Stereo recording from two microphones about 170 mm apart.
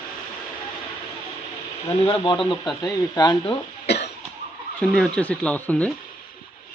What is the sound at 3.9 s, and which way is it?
Cough, 80° left.